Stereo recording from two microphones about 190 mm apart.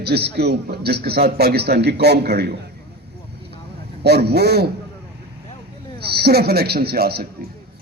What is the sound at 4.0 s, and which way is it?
Speech, 60° right (ahead or behind).